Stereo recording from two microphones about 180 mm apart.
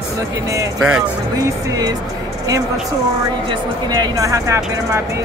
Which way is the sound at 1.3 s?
20° right (ahead or behind).